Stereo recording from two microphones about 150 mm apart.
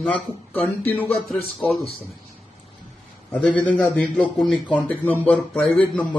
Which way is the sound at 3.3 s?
10° left (ahead or behind).